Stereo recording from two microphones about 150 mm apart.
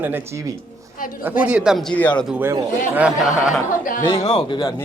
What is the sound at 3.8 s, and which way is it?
Speech, 65° left (ahead or behind).